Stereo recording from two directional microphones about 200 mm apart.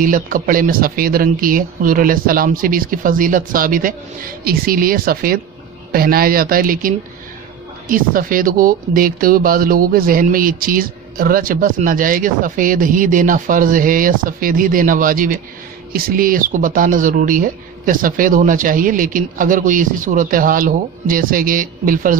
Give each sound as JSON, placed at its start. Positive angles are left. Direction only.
{"t": 0.0, "sound": "speech", "side_deg": -45}